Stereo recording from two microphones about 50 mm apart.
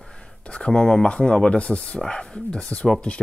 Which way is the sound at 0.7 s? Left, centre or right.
Centre.